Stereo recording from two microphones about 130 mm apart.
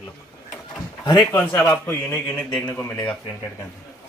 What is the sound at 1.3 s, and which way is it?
A man's voice, 15° left (ahead or behind).